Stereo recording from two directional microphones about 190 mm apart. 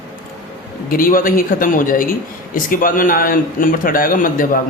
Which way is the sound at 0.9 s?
50° left (ahead or behind).